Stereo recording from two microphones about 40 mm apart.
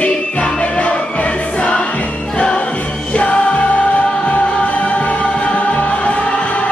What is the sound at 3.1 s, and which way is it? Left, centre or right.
Music, left.